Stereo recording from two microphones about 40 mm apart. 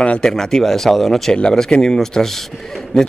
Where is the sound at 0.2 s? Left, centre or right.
Centre.